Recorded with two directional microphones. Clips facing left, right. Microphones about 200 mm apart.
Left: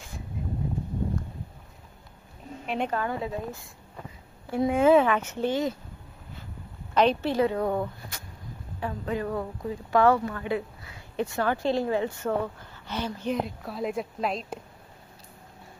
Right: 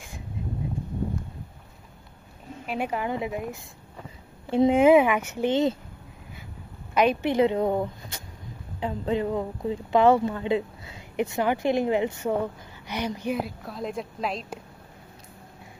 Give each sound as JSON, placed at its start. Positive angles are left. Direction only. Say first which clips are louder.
{"t": 2.6, "sound": "speech", "louder": "even", "side_deg": -5}
{"t": 4.5, "sound": "speech", "louder": "right 3 dB", "side_deg": -20}
{"t": 5.5, "sound": "speech", "louder": "right 5 dB", "side_deg": -25}
{"t": 6.9, "sound": "a woman's voice", "louder": "right 1 dB", "side_deg": -10}